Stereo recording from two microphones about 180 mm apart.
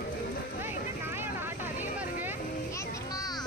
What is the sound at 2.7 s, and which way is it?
Music, 15° left (ahead or behind).